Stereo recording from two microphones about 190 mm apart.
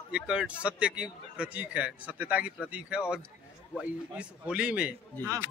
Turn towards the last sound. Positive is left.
turn(degrees=-15)  # may be behind; listen again after turning